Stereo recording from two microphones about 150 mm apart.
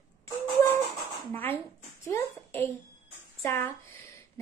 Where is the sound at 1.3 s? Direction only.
10° left (ahead or behind).